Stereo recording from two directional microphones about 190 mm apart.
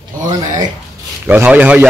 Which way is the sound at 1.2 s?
10° right (ahead or behind).